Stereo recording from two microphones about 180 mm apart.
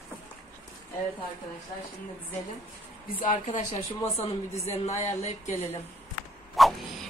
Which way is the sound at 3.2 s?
45° left (ahead or behind).